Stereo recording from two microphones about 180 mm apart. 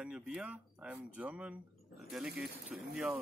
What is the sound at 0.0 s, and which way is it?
Speech, 5° right (ahead or behind).